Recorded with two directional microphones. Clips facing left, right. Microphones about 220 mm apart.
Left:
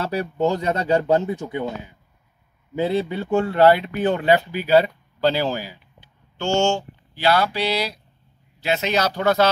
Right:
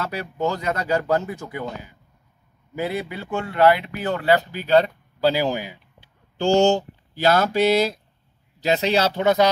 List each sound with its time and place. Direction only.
0.0 s speech: 30° left (ahead or behind)
2.7 s speech: 25° left (ahead or behind); by 4.9 s 10° left (ahead or behind)
5.2 s speech: 10° right (ahead or behind)
5.9 s speech: 35° right (ahead or behind)
8.5 s speech: 35° right (ahead or behind); by 9.5 s 20° right (ahead or behind)